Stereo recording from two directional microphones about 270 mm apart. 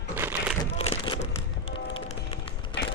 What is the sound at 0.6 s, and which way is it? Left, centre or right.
Crumpling, centre.